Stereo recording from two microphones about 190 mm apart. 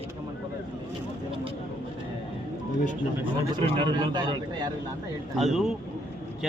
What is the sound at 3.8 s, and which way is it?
Speech, 20° right (ahead or behind).